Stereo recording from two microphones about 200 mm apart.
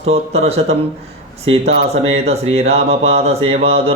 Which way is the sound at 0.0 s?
30° right (ahead or behind).